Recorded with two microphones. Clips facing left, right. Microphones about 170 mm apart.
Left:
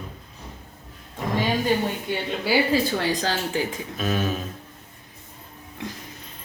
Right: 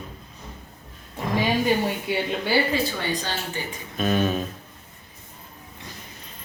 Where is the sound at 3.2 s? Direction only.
90° left.